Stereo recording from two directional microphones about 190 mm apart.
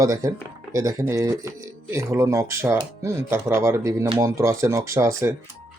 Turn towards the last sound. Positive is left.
turn(degrees=-15)  # may be behind; listen again after turning